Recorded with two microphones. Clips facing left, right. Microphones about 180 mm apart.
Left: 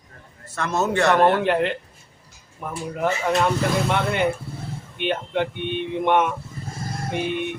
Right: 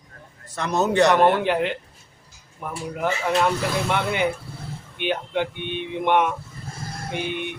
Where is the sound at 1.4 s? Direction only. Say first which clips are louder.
Left 1 dB; centre (ahead or behind).